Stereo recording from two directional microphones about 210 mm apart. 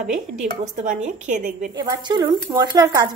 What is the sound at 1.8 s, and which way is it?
A woman's voice, 20° right (ahead or behind).